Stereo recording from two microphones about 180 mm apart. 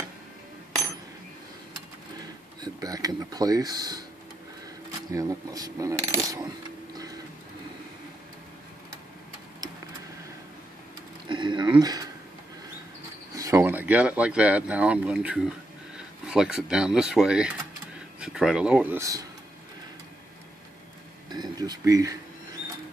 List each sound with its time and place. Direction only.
2.6 s speech: 20° right (ahead or behind)
5.1 s speech: 20° right (ahead or behind)
6.3 s a sound: 20° right (ahead or behind)
11.2 s a sound: 25° right (ahead or behind)
13.3 s speech: 15° right (ahead or behind)
21.3 s speech: 20° right (ahead or behind)